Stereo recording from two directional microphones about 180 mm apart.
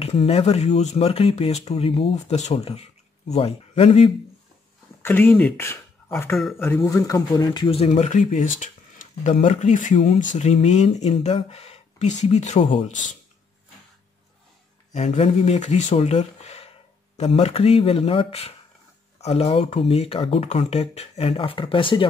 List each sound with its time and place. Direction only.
0.0 s speech: 35° left (ahead or behind)
5.0 s speech: 10° left (ahead or behind); by 13.0 s 40° left (ahead or behind)
14.9 s speech: 40° left (ahead or behind)